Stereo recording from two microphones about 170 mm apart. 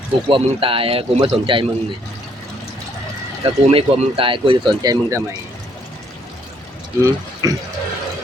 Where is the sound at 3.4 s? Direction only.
35° right (ahead or behind).